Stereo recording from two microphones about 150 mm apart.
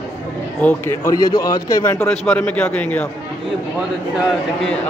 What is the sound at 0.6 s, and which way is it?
A man's voice, 15° left (ahead or behind).